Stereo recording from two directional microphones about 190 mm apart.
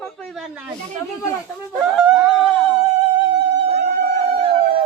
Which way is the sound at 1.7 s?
Centre (ahead or behind).